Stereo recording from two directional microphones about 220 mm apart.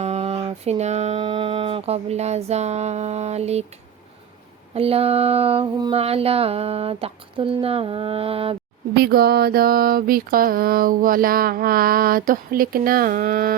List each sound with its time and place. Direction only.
0.0 s mantra: 30° right (ahead or behind)
4.7 s mantra: 25° right (ahead or behind)
9.0 s mantra: 45° right (ahead or behind)